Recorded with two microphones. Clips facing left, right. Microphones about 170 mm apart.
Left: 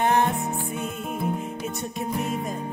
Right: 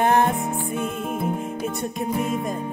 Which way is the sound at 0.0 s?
50° right (ahead or behind).